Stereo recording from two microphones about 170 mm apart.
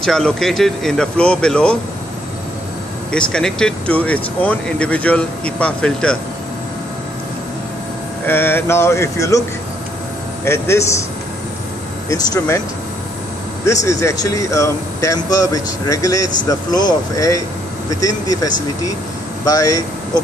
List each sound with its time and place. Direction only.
0.0 s speech: 5° left (ahead or behind)
3.1 s speech: 5° left (ahead or behind)
8.3 s speech: 15° left (ahead or behind)
10.4 s speech: 15° left (ahead or behind)
12.1 s speech: 20° left (ahead or behind)
13.7 s speech: 15° left (ahead or behind)